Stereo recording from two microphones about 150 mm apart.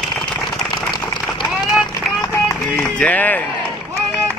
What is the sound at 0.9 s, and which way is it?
Run, 30° left (ahead or behind).